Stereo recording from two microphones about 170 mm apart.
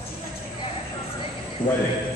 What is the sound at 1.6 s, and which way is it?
Speech, 30° left (ahead or behind).